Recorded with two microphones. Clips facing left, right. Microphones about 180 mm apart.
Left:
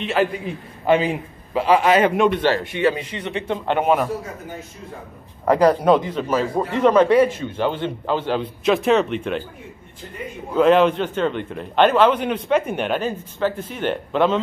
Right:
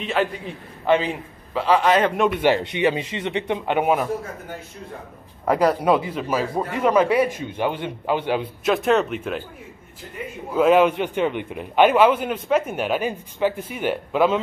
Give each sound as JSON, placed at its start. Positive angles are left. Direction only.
{"t": 0.0, "sound": "a man's voice", "side_deg": 0}
{"t": 2.4, "sound": "speech", "side_deg": -20}
{"t": 3.6, "sound": "a man's voice", "side_deg": -10}
{"t": 5.4, "sound": "a man's voice", "side_deg": -5}
{"t": 8.6, "sound": "speech", "side_deg": 0}
{"t": 10.5, "sound": "a man's voice", "side_deg": -5}